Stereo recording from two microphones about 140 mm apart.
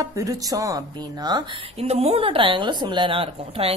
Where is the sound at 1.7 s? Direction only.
45° right (ahead or behind).